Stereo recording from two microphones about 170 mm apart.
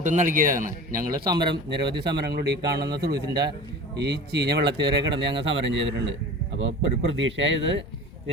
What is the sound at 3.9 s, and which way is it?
Speech, 80° right.